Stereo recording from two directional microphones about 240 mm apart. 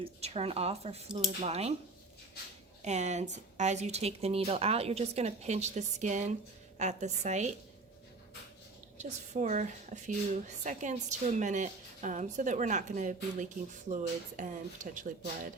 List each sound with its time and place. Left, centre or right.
0.0 s speech: right
2.8 s speech: right
9.0 s a woman's voice: right